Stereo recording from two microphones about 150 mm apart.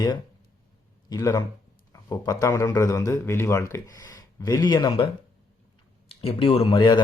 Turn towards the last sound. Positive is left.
turn(degrees=30)  # may be behind; listen again after turning